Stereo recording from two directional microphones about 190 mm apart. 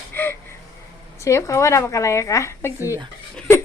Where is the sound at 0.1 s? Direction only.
10° left (ahead or behind).